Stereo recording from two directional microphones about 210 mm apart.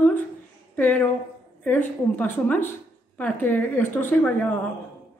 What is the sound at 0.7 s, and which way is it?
A woman's voice, 10° left (ahead or behind).